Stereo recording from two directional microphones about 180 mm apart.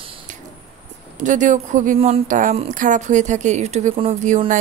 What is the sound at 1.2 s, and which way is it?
A woman's voice, 45° right (ahead or behind).